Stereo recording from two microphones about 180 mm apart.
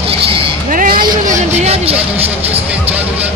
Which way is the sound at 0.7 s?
50° right (ahead or behind).